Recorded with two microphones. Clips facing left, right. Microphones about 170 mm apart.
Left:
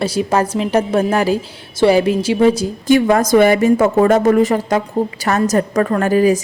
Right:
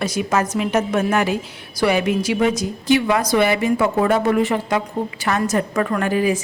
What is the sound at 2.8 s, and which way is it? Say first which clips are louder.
A woman's voice: left 5 dB; 45° left (ahead or behind).